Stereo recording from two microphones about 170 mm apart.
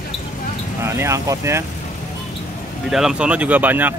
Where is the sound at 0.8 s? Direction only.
15° right (ahead or behind).